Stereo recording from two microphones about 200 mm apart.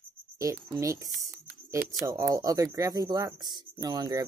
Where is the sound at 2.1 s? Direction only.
15° right (ahead or behind).